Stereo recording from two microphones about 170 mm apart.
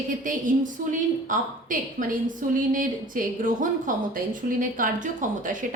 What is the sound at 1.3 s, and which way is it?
A woman's voice, 50° right (ahead or behind).